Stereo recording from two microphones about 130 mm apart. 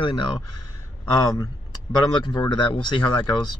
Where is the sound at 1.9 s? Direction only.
30° left (ahead or behind).